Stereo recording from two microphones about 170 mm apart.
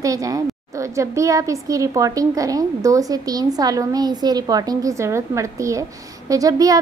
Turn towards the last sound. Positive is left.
turn(degrees=-20)  # may be behind; listen again after turning